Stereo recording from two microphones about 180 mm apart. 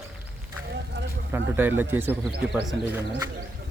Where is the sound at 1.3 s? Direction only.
10° right (ahead or behind).